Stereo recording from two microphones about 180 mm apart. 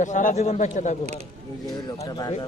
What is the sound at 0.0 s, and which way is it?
Speech, 45° left (ahead or behind).